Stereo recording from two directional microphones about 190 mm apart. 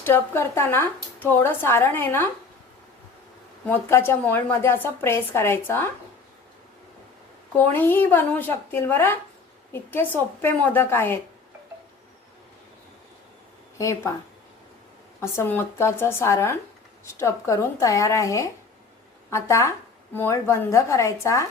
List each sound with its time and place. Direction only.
0.0 s speech: 15° left (ahead or behind)
3.7 s speech: 10° left (ahead or behind)
7.5 s speech: 10° left (ahead or behind)
13.7 s speech: 15° left (ahead or behind)
15.2 s speech: 10° left (ahead or behind)